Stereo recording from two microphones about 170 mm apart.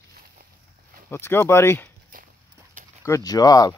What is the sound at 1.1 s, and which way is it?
Speech, 15° left (ahead or behind).